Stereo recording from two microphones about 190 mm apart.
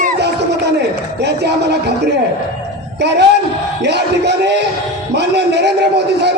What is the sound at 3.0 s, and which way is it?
A man's voice, 60° right (ahead or behind).